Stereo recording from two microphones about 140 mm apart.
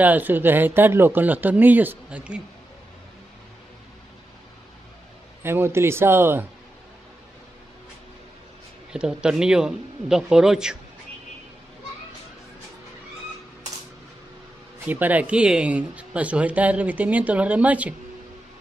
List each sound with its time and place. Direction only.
0.0 s speech: 10° right (ahead or behind)
5.4 s speech: 15° right (ahead or behind)
8.9 s speech: 5° right (ahead or behind)
14.9 s speech: 10° right (ahead or behind)